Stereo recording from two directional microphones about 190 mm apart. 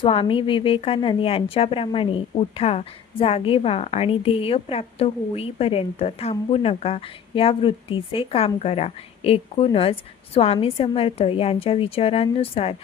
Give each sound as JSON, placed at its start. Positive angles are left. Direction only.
{"t": 0.0, "sound": "a woman's voice", "side_deg": 30}